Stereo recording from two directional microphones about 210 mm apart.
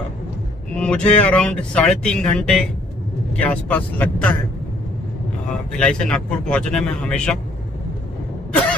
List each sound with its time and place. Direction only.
0.7 s speech: 5° left (ahead or behind)
5.8 s speech: 5° left (ahead or behind)